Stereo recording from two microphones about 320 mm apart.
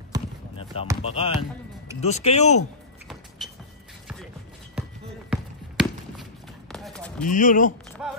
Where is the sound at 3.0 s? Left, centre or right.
Centre.